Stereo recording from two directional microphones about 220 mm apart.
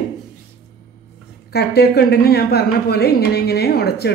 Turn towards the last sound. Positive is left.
turn(degrees=45)  # may be behind; listen again after turning